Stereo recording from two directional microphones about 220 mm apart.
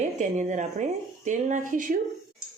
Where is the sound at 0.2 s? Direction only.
35° right (ahead or behind).